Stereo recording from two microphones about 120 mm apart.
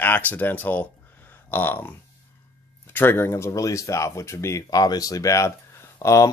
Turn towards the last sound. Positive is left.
turn(degrees=25)  # may be behind; listen again after turning